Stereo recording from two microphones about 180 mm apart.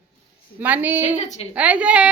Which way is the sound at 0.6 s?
10° right (ahead or behind).